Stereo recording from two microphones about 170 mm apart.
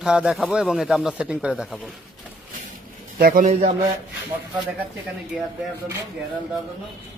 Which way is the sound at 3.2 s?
55° right (ahead or behind).